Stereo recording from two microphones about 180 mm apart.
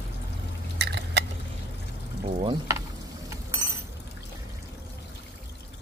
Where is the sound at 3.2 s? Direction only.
15° right (ahead or behind).